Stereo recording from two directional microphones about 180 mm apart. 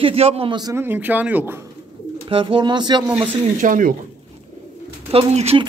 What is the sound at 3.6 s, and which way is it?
Speech, 50° right (ahead or behind).